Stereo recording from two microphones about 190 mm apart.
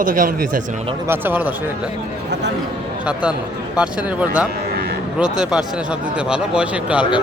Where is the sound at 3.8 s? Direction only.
5° right (ahead or behind).